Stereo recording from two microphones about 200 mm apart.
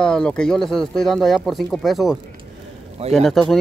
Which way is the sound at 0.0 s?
5° left (ahead or behind).